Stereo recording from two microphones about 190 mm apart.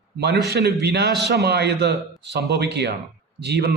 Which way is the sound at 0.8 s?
60° right (ahead or behind).